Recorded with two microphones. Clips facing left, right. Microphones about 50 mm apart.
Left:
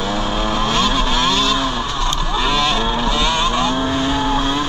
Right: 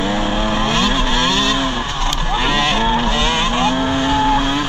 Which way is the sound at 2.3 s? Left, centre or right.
Right.